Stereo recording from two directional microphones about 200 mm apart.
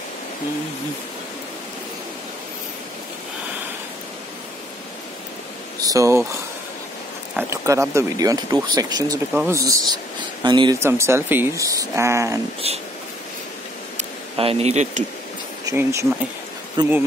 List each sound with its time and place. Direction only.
5.8 s speech: 15° right (ahead or behind)
7.3 s speech: 15° right (ahead or behind)
12.6 s a sound: 30° right (ahead or behind)
13.9 s speech: 30° right (ahead or behind)
15.7 s speech: 10° right (ahead or behind)